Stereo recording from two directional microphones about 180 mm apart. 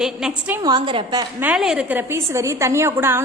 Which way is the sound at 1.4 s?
5° right (ahead or behind).